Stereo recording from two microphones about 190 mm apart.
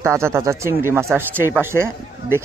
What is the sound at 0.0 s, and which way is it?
Speech, 15° right (ahead or behind).